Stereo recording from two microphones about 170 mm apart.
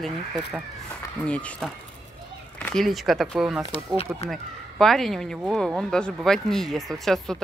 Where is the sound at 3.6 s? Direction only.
35° left (ahead or behind).